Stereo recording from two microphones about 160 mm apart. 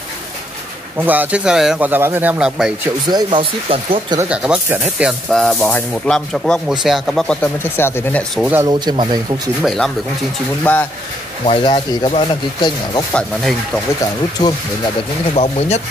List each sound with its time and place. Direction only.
0.9 s speech: 10° right (ahead or behind)
3.3 s speech: 35° right (ahead or behind)
4.3 s speech: 5° right (ahead or behind)
7.7 s speech: 15° left (ahead or behind)
8.6 s speech: 30° right (ahead or behind)
9.6 s speech: centre (ahead or behind)
11.4 s speech: 30° left (ahead or behind)
13.1 s speech: centre (ahead or behind)
14.4 s speech: 25° left (ahead or behind)
15.3 s speech: 40° left (ahead or behind)